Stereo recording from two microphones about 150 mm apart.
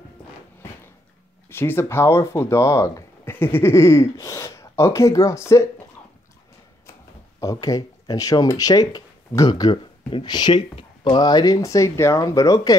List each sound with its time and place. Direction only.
1.5 s speech: 15° left (ahead or behind)
6.9 s speech: 20° left (ahead or behind)